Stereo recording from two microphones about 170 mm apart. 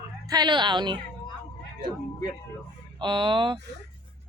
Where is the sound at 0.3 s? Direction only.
25° right (ahead or behind).